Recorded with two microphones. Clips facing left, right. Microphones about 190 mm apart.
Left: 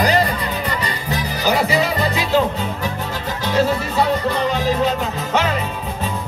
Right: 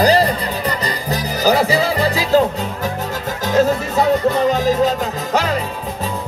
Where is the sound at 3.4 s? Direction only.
45° right (ahead or behind).